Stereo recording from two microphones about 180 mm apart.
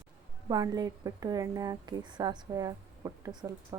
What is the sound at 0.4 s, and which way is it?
A woman's voice, 20° right (ahead or behind).